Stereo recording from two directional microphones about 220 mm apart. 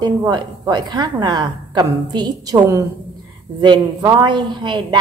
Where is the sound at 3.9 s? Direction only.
15° right (ahead or behind).